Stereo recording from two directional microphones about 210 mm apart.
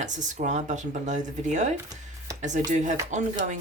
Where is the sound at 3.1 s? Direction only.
35° right (ahead or behind).